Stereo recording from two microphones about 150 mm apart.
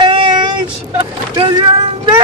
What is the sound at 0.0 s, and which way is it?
Child singing, 30° right (ahead or behind).